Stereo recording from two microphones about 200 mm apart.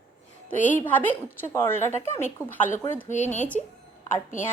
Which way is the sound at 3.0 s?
40° left (ahead or behind).